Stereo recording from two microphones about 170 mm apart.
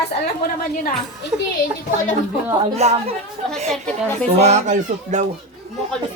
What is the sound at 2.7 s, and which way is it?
Speech, 40° right (ahead or behind).